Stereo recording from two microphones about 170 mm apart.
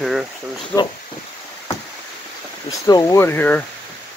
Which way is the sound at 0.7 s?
15° left (ahead or behind).